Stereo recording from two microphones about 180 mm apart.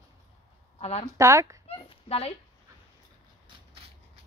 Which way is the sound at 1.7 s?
35° left (ahead or behind).